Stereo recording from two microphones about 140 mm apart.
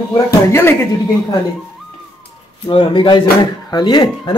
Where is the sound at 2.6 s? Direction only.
35° left (ahead or behind).